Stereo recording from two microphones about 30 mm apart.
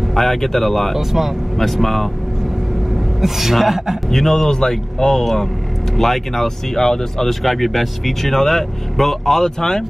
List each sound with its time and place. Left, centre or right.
0.1 s speech: centre
0.9 s a woman's voice: centre
1.6 s speech: centre
3.2 s a woman's voice: centre
4.1 s speech: centre
5.9 s speech: centre